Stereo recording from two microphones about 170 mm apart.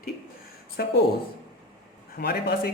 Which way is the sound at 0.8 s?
65° left (ahead or behind).